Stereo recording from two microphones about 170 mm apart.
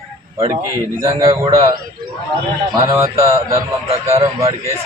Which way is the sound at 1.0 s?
20° right (ahead or behind).